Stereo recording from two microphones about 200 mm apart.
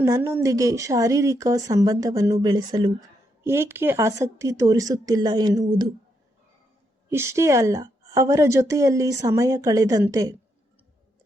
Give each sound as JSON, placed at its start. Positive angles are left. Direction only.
{"t": 0.0, "sound": "a woman's voice", "side_deg": -15}
{"t": 7.1, "sound": "a woman's voice", "side_deg": -15}